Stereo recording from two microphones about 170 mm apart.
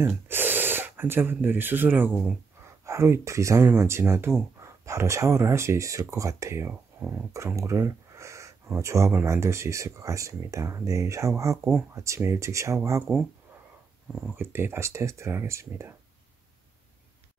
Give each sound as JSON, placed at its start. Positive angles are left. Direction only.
{"t": 0.0, "sound": "speech", "side_deg": -10}
{"t": 14.3, "sound": "speech", "side_deg": -15}